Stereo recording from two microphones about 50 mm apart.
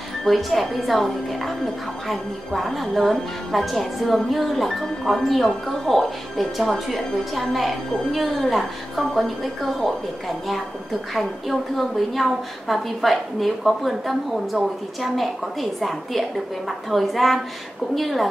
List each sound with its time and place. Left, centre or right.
0.2 s a woman's voice: centre